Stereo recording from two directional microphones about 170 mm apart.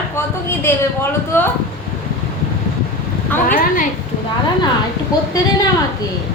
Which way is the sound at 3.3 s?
10° left (ahead or behind).